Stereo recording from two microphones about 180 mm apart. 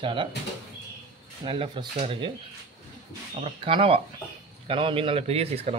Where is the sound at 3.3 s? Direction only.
30° right (ahead or behind).